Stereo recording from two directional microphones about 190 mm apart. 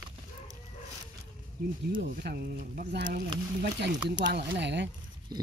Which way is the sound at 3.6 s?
65° right (ahead or behind).